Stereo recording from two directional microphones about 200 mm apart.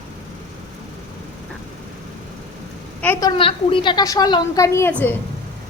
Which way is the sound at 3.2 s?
25° left (ahead or behind).